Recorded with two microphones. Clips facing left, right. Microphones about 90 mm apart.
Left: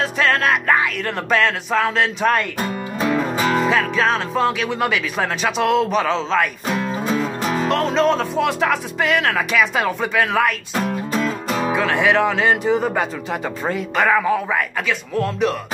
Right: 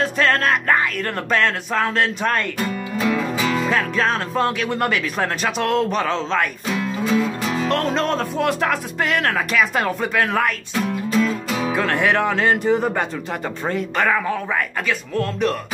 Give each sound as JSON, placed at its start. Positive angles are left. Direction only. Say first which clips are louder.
{"t": 0.0, "sound": "music", "louder": "even", "side_deg": 0}
{"t": 1.3, "sound": "speech", "louder": "left 2 dB", "side_deg": 0}
{"t": 2.6, "sound": "music", "louder": "even", "side_deg": 30}
{"t": 3.6, "sound": "speech", "louder": "left 2 dB", "side_deg": 0}
{"t": 6.7, "sound": "music", "louder": "even", "side_deg": 30}
{"t": 7.6, "sound": "speech", "louder": "left 4 dB", "side_deg": 0}
{"t": 11.1, "sound": "music", "louder": "right 1 dB", "side_deg": 30}
{"t": 11.7, "sound": "speech", "louder": "left 2 dB", "side_deg": 0}